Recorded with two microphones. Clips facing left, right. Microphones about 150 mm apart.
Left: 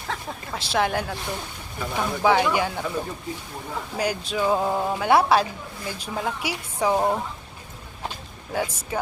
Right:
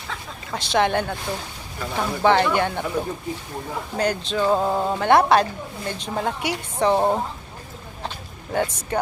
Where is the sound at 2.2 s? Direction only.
5° left (ahead or behind).